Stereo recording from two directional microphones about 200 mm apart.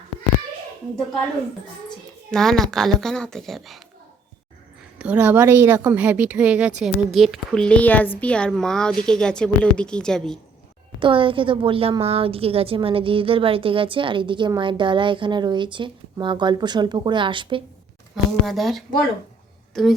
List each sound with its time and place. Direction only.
2.3 s a woman's voice: centre (ahead or behind)
4.9 s a woman's voice: 5° right (ahead or behind)
11.0 s a woman's voice: 25° right (ahead or behind)
18.1 s a woman's voice: centre (ahead or behind)